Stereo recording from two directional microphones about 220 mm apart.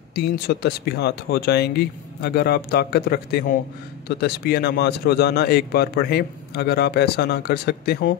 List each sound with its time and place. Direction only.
0.1 s a man's voice: 45° left (ahead or behind)